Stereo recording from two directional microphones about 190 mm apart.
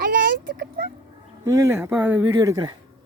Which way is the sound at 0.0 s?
50° right (ahead or behind).